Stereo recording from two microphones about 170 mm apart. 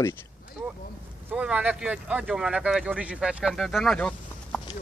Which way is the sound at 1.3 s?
5° right (ahead or behind).